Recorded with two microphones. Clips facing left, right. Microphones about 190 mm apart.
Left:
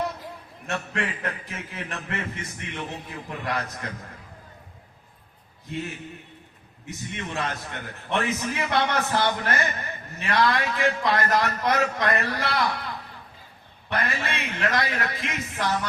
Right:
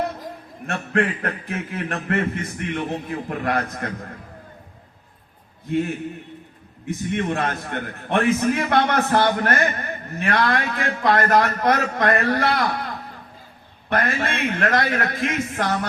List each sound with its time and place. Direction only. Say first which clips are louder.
0.7 s a man's voice: right 7 dB; 55° right (ahead or behind)
5.7 s a man's voice: right 10 dB; 55° right (ahead or behind)
7.1 s a man's voice: right 7 dB; 55° right (ahead or behind)
13.9 s a man's voice: right 6 dB; 50° right (ahead or behind)